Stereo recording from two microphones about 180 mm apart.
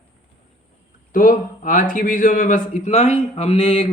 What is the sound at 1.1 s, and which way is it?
A man's voice, 50° left (ahead or behind).